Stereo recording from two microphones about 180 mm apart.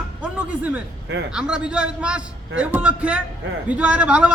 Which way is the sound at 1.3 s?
5° right (ahead or behind).